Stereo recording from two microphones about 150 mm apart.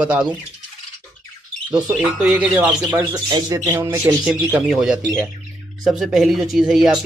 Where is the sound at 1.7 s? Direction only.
10° right (ahead or behind).